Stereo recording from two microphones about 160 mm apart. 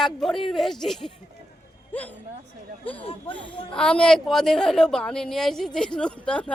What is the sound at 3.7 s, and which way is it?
A woman's voice, 5° left (ahead or behind).